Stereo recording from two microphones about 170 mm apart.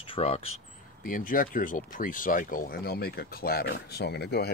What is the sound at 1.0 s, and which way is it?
Speech, 55° left (ahead or behind).